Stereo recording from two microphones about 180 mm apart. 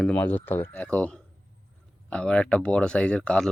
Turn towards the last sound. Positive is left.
turn(degrees=5)  # may be behind; listen again after turning